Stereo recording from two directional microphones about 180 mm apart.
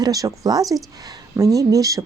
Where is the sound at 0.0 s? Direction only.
20° right (ahead or behind).